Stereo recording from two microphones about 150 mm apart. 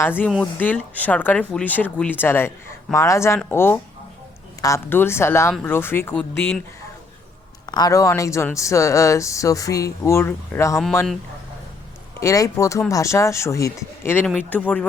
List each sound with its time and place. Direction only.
0.0 s speech: 15° left (ahead or behind)
7.7 s speech: 25° left (ahead or behind)
12.2 s speech: 20° left (ahead or behind)